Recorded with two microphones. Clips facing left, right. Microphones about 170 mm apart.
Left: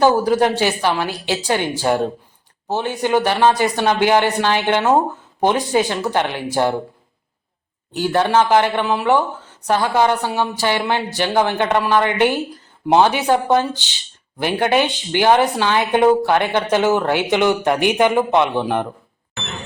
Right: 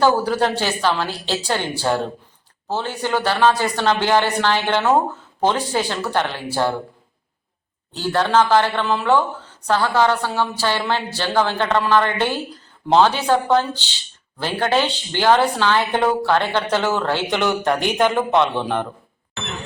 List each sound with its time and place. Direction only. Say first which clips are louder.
0.0 s speech: left 3 dB; 15° left (ahead or behind)
7.9 s speech: left 2 dB; 15° left (ahead or behind)